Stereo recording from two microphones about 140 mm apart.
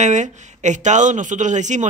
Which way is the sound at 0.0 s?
60° right (ahead or behind).